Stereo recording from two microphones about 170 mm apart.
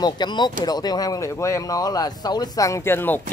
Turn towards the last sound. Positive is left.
turn(degrees=10)  # may be behind; listen again after turning